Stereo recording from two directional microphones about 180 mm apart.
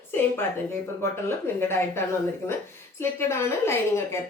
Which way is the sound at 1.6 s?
15° left (ahead or behind).